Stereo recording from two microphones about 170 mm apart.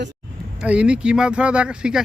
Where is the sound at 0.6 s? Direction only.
5° right (ahead or behind).